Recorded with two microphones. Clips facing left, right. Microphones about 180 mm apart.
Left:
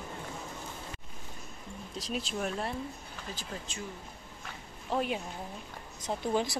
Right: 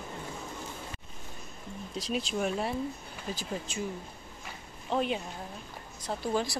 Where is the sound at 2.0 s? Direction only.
Centre (ahead or behind).